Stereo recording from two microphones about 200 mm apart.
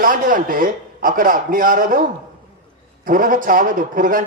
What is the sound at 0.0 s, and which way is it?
A man's voice, 40° right (ahead or behind).